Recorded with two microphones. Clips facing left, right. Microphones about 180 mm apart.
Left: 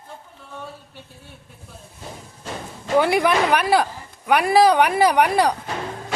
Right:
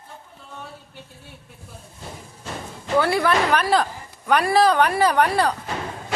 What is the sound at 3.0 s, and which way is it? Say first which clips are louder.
A woman's voice: left 2 dB; 15° left (ahead or behind).